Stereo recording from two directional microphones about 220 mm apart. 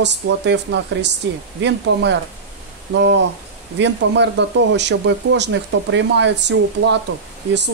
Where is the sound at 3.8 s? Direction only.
55° right (ahead or behind).